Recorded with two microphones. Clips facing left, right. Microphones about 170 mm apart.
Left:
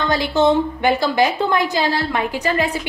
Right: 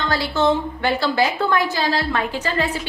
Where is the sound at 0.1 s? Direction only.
15° left (ahead or behind).